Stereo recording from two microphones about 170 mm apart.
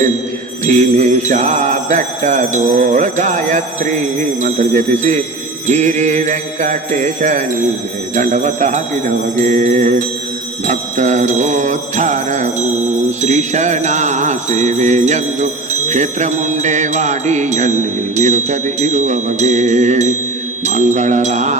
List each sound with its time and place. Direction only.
0.6 s jingle bell: 45° right (ahead or behind)